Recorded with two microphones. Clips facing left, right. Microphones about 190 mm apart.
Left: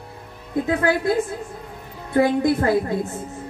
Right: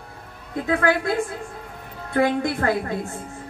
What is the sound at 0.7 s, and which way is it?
A woman's voice, 20° left (ahead or behind).